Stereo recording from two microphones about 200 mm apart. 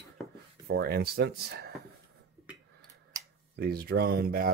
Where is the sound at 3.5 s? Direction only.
50° right (ahead or behind).